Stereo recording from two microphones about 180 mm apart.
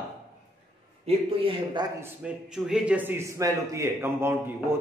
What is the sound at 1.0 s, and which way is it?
Speech, 30° right (ahead or behind).